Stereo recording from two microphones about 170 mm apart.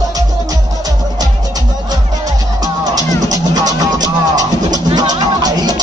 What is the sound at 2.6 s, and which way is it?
Music, 20° right (ahead or behind).